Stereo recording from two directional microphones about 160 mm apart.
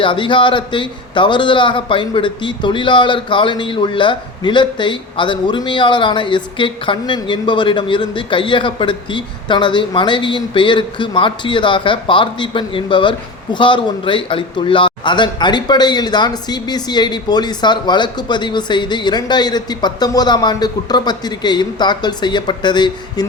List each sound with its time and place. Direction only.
0.0 s a man's voice: 30° left (ahead or behind)